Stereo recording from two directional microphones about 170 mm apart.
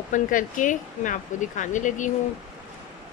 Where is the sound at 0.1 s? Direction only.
50° left (ahead or behind).